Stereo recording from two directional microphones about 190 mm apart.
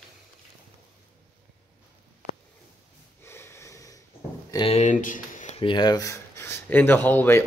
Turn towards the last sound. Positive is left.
turn(degrees=10)  # may be behind; listen again after turning